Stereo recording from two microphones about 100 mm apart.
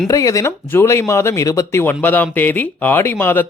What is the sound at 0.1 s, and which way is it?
Speech, 35° left (ahead or behind).